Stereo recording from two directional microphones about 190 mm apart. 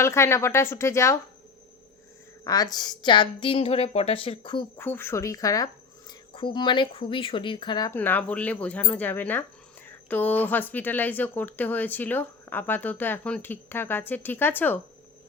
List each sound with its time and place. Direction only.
0.0 s speech: 15° left (ahead or behind)
2.4 s speech: 20° left (ahead or behind)
4.8 s speech: 10° left (ahead or behind)
7.9 s speech: 10° left (ahead or behind)